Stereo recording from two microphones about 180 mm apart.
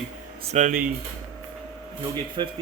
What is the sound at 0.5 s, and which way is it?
Speech, 45° right (ahead or behind).